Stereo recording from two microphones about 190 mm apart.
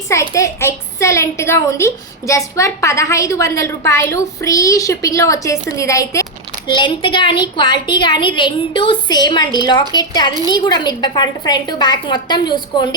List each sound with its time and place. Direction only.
0.1 s a child's voice: 15° left (ahead or behind)